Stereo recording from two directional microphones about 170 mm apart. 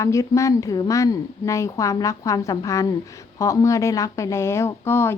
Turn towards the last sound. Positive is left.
turn(degrees=15)  # may be behind; listen again after turning